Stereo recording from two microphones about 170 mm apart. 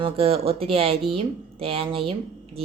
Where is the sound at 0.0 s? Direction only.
35° right (ahead or behind).